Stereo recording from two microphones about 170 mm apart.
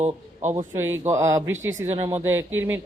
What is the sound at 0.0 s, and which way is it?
Speech, 40° right (ahead or behind).